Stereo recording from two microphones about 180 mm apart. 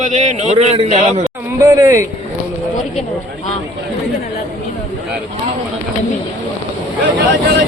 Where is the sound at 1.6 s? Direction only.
20° right (ahead or behind).